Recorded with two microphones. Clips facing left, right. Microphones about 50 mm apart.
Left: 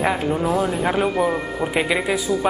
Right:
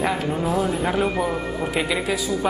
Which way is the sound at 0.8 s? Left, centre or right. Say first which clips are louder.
Left 2 dB; centre.